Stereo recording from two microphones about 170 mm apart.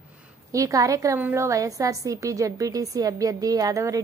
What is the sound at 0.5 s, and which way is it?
A woman's voice, 20° right (ahead or behind).